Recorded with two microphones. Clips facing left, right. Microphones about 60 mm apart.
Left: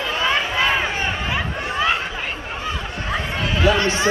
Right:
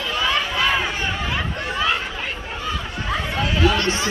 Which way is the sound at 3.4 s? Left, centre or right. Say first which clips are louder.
Right 3 dB; left.